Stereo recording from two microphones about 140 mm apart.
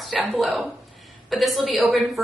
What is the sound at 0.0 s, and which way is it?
A woman's voice, 5° right (ahead or behind).